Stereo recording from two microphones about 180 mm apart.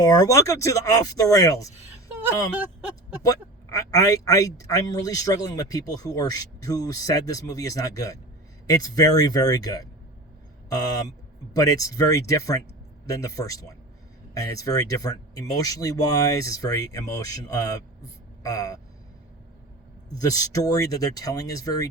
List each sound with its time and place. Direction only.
0.0 s a man's voice: 20° left (ahead or behind)
3.2 s a man's voice: 20° left (ahead or behind)
20.5 s a man's voice: 20° left (ahead or behind)